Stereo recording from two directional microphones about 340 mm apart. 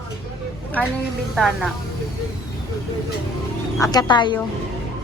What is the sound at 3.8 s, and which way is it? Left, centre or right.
Speech, centre.